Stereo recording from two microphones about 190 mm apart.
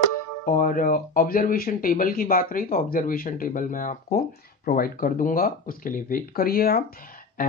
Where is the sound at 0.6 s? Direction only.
45° left (ahead or behind).